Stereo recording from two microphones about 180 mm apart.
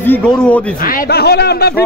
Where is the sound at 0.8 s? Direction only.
60° left (ahead or behind).